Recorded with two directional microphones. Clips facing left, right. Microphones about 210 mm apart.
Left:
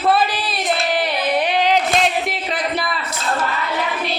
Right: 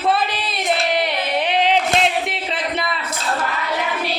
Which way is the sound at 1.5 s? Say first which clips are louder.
Left 1 dB; 25° right (ahead or behind).